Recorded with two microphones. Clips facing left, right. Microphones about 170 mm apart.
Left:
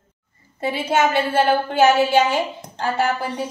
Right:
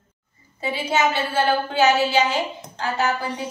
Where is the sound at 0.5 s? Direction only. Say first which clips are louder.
Left 3 dB; 55° left (ahead or behind).